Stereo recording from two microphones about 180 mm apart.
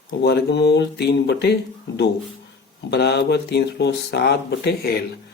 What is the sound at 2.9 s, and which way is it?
Speech, 70° left (ahead or behind).